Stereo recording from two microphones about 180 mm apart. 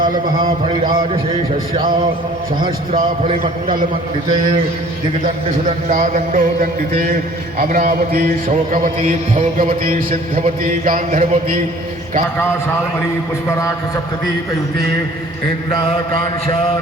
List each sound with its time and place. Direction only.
0.0 s speech: 55° right (ahead or behind)
2.6 s speech: 50° right (ahead or behind)
3.2 s a man's voice: 30° right (ahead or behind)
5.2 s speech: 45° right (ahead or behind)
13.6 s a man's voice: 15° left (ahead or behind)
15.7 s mantra: 30° left (ahead or behind)